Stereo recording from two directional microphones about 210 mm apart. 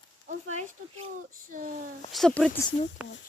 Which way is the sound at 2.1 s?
Centre (ahead or behind).